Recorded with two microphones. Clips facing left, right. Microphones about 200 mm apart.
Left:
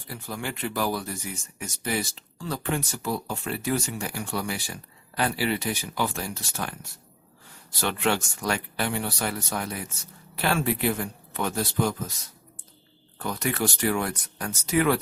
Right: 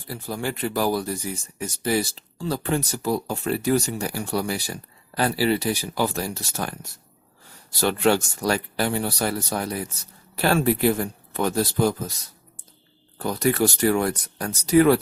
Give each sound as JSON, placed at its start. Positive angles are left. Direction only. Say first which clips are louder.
{"t": 0.1, "sound": "speech", "louder": "right 5 dB", "side_deg": -35}
{"t": 7.8, "sound": "speech", "louder": "right 6 dB", "side_deg": -35}
{"t": 13.1, "sound": "speech", "louder": "right 7 dB", "side_deg": -35}